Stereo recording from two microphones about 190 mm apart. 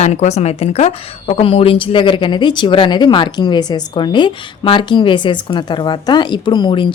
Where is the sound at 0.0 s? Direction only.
35° left (ahead or behind).